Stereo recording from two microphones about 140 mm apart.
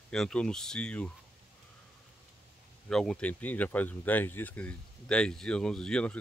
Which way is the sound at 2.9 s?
Centre (ahead or behind).